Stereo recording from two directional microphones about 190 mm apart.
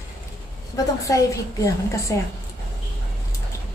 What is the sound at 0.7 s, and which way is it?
A woman's voice, 15° left (ahead or behind).